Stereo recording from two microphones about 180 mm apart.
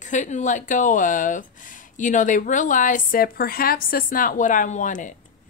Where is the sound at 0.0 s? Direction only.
45° left (ahead or behind).